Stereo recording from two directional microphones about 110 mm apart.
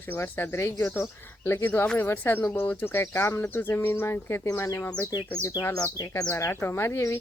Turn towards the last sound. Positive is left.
turn(degrees=25)  # may be behind; listen again after turning